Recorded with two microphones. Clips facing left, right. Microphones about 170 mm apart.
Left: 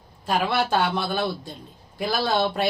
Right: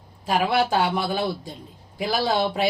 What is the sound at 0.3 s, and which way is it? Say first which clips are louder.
Speech: right 2 dB; 10° right (ahead or behind).